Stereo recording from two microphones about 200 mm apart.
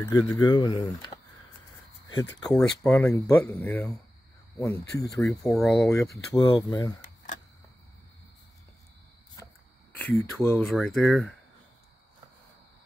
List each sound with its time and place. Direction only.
0.0 s speech: 20° left (ahead or behind)
2.5 s speech: 10° left (ahead or behind)
9.9 s speech: 10° left (ahead or behind)